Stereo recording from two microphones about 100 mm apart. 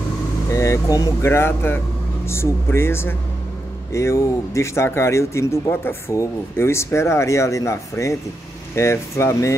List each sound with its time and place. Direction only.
0.5 s speech: 35° left (ahead or behind)
1.2 s speech: 25° left (ahead or behind)